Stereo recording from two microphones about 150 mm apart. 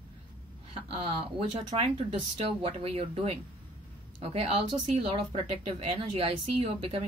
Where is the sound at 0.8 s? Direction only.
35° right (ahead or behind).